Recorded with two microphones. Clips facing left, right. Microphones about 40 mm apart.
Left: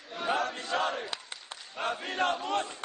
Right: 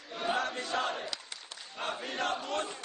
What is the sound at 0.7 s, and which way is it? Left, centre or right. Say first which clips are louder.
Battle cry: left 3 dB; left.